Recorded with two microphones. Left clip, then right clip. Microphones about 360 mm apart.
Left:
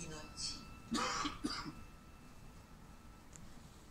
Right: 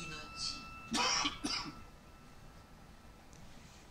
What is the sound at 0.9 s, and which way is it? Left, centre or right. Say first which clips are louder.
Cough: right 5 dB; right.